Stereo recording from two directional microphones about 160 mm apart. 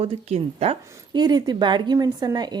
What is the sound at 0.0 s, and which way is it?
Speech, 40° right (ahead or behind).